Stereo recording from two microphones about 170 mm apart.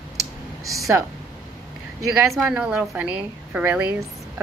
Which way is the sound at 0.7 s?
20° right (ahead or behind).